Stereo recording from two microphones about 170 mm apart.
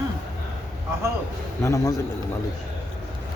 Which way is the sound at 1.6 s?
20° left (ahead or behind).